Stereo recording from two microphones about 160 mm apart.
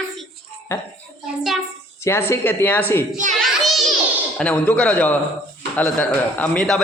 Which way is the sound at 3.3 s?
Centre (ahead or behind).